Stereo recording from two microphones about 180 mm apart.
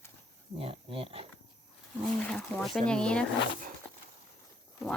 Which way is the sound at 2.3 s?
Centre (ahead or behind).